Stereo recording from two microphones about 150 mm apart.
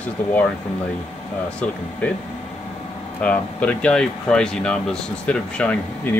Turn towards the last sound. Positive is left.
turn(degrees=10)  # may be behind; listen again after turning